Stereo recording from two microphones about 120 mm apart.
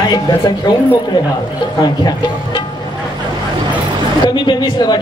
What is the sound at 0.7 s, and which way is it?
Speech, 40° left (ahead or behind).